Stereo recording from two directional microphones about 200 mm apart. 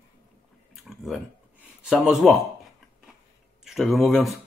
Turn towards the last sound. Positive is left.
turn(degrees=0)  # may be behind; listen again after turning